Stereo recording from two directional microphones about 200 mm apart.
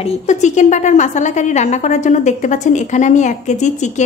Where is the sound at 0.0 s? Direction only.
35° left (ahead or behind).